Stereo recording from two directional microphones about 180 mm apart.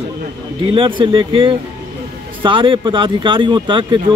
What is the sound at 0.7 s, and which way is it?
A man's voice, 30° right (ahead or behind).